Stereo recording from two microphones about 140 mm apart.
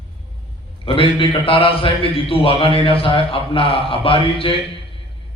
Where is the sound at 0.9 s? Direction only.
40° left (ahead or behind).